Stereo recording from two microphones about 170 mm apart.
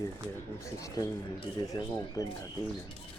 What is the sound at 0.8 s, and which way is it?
Speech, 20° left (ahead or behind).